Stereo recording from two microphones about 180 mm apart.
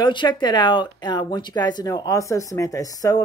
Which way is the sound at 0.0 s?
25° left (ahead or behind).